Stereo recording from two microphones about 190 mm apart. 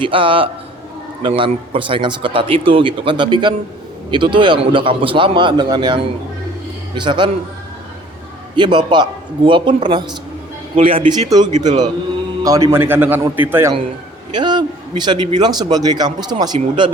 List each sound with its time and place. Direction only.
0.0 s speech: 25° right (ahead or behind)
8.5 s a man's voice: 25° right (ahead or behind)
14.3 s speech: 25° right (ahead or behind)